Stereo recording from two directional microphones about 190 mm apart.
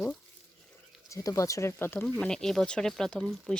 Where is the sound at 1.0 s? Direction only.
15° left (ahead or behind).